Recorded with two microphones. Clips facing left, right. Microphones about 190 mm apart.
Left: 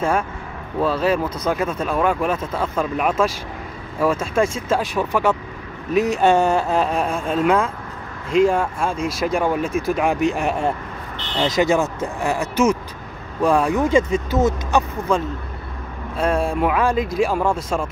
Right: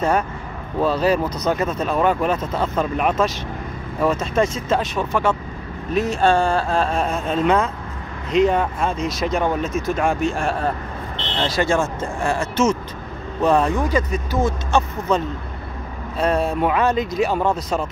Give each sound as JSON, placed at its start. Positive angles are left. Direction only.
{"t": 0.7, "sound": "speech", "side_deg": 0}
{"t": 13.7, "sound": "speech", "side_deg": 25}